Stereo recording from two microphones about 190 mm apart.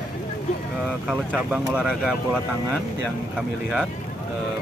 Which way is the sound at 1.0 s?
5° right (ahead or behind).